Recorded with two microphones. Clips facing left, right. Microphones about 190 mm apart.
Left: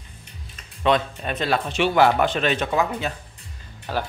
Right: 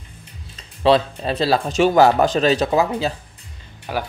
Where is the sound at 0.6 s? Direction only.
30° right (ahead or behind).